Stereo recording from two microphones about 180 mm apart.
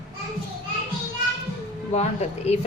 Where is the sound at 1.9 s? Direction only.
35° left (ahead or behind).